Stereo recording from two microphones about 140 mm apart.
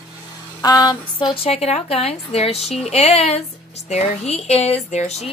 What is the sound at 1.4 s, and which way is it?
Speech, 45° left (ahead or behind).